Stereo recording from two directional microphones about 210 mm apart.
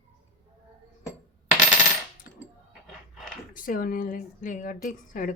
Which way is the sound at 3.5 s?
40° left (ahead or behind).